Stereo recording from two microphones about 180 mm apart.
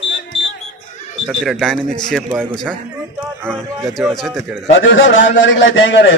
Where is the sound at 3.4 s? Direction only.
10° right (ahead or behind).